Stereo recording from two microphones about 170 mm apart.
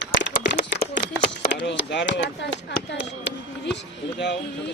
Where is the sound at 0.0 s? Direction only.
90° left.